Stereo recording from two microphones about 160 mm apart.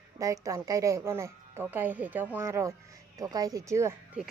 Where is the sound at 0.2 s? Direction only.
20° right (ahead or behind).